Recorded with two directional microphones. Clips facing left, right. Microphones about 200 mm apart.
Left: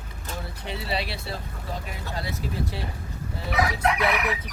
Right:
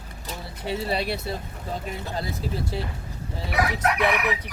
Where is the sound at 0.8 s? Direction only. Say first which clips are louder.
Right 3 dB; 50° right (ahead or behind).